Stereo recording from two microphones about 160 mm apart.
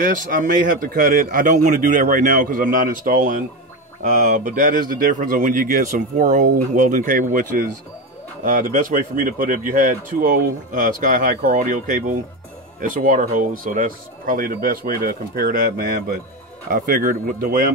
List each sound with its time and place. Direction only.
0.0 s speech: 55° right (ahead or behind)